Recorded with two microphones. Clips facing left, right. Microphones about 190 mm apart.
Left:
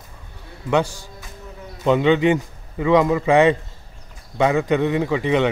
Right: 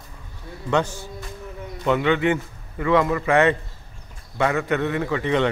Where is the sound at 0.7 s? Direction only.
10° left (ahead or behind).